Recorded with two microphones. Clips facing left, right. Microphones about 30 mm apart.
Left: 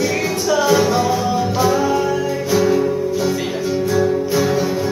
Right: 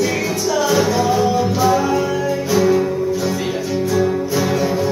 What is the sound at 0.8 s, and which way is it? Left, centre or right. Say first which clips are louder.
Music: right 1 dB; centre.